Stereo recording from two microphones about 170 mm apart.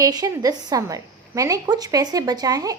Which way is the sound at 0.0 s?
20° right (ahead or behind).